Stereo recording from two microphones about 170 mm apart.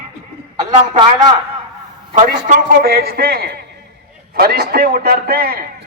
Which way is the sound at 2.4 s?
55° right (ahead or behind).